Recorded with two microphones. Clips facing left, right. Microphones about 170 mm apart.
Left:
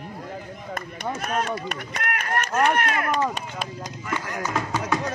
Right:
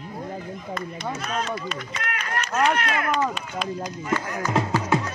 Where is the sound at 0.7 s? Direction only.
50° left (ahead or behind).